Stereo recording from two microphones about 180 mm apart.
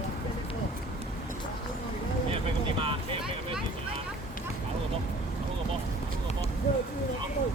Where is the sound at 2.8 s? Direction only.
30° right (ahead or behind).